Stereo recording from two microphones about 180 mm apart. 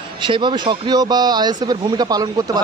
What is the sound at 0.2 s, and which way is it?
Speech, 25° right (ahead or behind).